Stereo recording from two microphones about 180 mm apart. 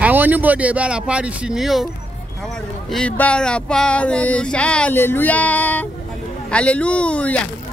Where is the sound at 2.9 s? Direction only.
5° left (ahead or behind).